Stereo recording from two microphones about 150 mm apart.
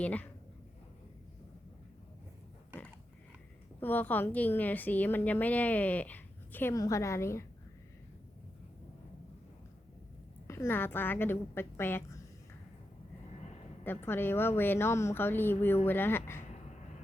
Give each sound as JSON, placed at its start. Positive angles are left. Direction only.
{"t": 0.0, "sound": "a woman's voice", "side_deg": 10}
{"t": 3.8, "sound": "a woman's voice", "side_deg": 15}
{"t": 10.4, "sound": "a woman's voice", "side_deg": 20}
{"t": 13.8, "sound": "a woman's voice", "side_deg": 15}
{"t": 16.4, "sound": "a sound", "side_deg": 50}